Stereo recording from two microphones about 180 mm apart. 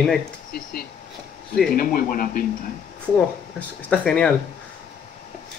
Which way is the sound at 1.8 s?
55° left (ahead or behind).